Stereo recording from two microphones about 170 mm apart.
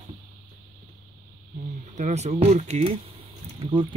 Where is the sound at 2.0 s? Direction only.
40° right (ahead or behind).